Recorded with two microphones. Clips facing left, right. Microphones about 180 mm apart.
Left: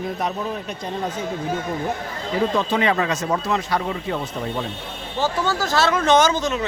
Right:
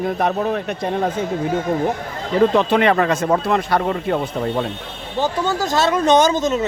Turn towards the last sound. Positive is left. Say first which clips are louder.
# right 3 dB
turn(degrees=-20)  # may be behind; listen again after turning